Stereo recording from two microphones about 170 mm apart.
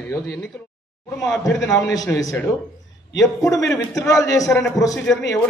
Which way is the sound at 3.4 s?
20° left (ahead or behind).